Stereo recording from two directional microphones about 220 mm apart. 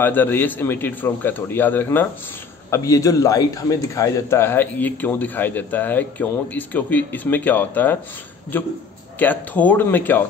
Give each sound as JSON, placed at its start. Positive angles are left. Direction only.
{"t": 0.0, "sound": "a man's voice", "side_deg": 10}